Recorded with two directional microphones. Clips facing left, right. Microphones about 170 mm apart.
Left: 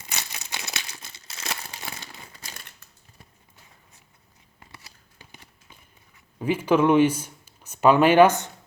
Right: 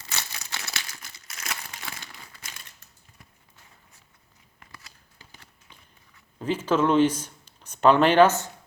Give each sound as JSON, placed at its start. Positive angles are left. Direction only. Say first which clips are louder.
{"t": 0.0, "sound": "crumpling", "louder": "even", "side_deg": 15}
{"t": 5.1, "sound": "a sound", "louder": "left 4 dB", "side_deg": 15}
{"t": 6.4, "sound": "speech", "louder": "left 3 dB", "side_deg": 10}